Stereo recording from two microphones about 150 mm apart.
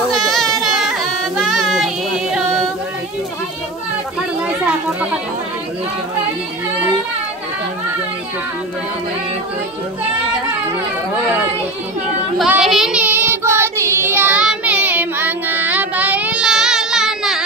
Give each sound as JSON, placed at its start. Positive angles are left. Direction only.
{"t": 0.1, "sound": "a sound", "side_deg": 0}
{"t": 4.5, "sound": "children playing", "side_deg": -10}
{"t": 12.4, "sound": "child singing", "side_deg": -5}